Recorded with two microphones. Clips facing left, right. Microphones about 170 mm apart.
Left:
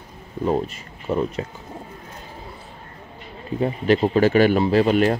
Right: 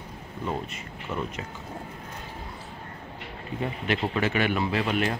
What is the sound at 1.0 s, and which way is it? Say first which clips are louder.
Speech: left 9 dB; 35° left (ahead or behind).